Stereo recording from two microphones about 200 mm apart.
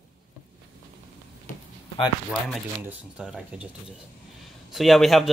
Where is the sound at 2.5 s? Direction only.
5° right (ahead or behind).